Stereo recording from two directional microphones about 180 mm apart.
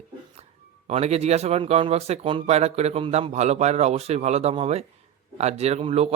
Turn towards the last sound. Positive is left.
turn(degrees=-35)  # may be behind; listen again after turning